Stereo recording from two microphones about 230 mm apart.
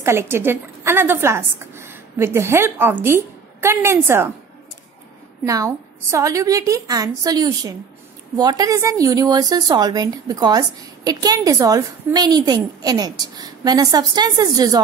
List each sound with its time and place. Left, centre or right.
0.0 s a woman's voice: centre
5.4 s a woman's voice: centre